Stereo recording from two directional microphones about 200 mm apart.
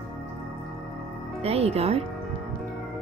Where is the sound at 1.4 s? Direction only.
30° right (ahead or behind).